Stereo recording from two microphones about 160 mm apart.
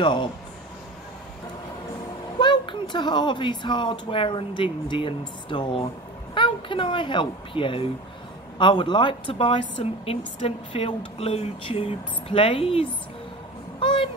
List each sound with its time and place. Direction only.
0.0 s speech: 30° left (ahead or behind)
2.3 s speech: 30° left (ahead or behind)
13.7 s a sound: 30° left (ahead or behind)